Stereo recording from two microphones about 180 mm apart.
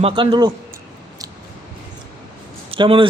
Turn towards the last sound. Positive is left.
turn(degrees=-30)  # may be behind; listen again after turning